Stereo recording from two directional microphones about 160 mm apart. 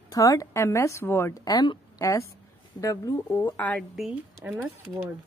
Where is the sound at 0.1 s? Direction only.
20° left (ahead or behind).